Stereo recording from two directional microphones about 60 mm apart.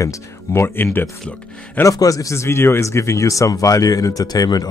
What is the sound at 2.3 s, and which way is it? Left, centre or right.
Speech, left.